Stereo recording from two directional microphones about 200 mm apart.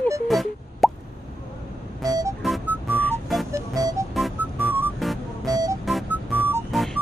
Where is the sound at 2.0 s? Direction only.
20° right (ahead or behind).